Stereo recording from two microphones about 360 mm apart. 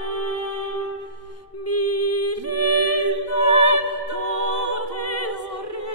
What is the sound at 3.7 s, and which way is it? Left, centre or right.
Music, right.